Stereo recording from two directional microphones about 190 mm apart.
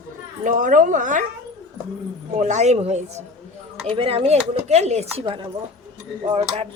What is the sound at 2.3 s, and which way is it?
Speech, 35° right (ahead or behind).